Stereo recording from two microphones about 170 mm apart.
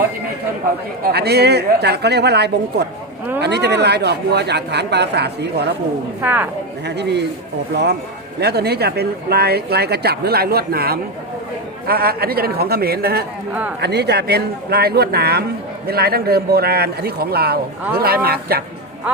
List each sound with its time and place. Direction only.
1.1 s speech: 70° right (ahead or behind)
6.2 s speech: 10° right (ahead or behind)
6.8 s speech: 80° right
8.4 s speech: 70° right (ahead or behind)
13.5 s speech: 10° right (ahead or behind)
13.8 s speech: 75° right (ahead or behind)